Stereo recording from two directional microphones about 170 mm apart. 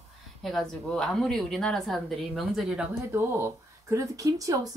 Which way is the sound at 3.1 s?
15° right (ahead or behind).